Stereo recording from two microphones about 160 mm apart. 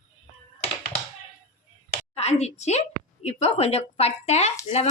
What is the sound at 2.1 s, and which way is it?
A woman's voice, 40° left (ahead or behind).